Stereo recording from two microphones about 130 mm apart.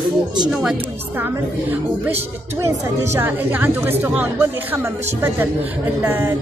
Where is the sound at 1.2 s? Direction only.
15° right (ahead or behind).